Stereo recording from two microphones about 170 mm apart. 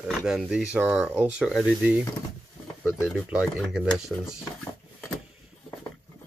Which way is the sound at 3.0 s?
Centre (ahead or behind).